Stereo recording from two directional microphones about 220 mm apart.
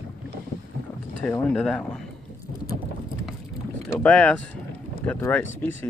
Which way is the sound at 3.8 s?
5° left (ahead or behind).